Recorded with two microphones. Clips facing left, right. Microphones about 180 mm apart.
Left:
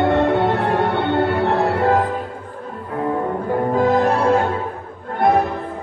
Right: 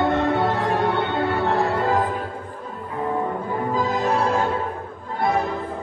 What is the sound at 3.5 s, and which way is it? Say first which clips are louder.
Music: left 9 dB; 65° left (ahead or behind).